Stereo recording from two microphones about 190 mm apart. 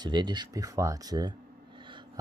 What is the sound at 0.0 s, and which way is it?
Speech, 25° right (ahead or behind).